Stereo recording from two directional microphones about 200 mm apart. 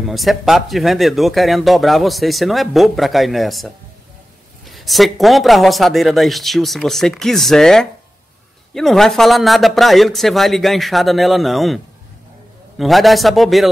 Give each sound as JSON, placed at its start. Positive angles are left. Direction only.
{"t": 0.0, "sound": "speech", "side_deg": 0}